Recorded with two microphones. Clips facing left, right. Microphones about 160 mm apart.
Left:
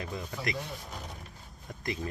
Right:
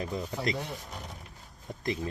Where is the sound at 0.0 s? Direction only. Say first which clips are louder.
Right 4 dB; 20° right (ahead or behind).